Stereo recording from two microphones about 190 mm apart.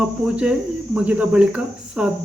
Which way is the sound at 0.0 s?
5° right (ahead or behind).